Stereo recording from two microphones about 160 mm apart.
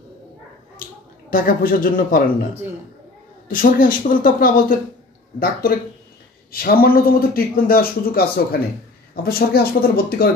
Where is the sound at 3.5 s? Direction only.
60° left (ahead or behind).